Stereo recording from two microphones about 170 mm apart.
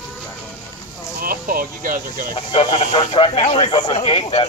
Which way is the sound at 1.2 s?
55° right (ahead or behind).